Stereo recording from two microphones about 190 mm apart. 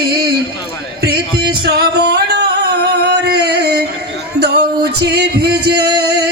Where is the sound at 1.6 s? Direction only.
55° right (ahead or behind).